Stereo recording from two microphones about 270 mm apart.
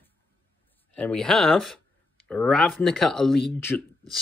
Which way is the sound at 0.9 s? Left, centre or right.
Centre.